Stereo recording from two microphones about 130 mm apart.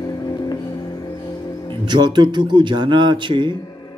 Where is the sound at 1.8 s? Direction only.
35° right (ahead or behind).